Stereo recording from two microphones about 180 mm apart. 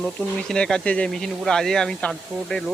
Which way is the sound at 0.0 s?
5° left (ahead or behind).